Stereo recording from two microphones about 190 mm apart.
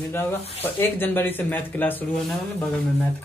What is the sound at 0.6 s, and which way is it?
Speech, 10° left (ahead or behind).